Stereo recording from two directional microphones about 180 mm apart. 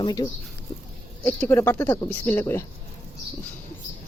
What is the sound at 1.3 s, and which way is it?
Speech, 10° left (ahead or behind).